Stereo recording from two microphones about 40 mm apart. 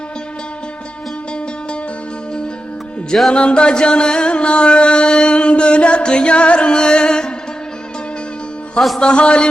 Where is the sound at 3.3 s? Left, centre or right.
Left.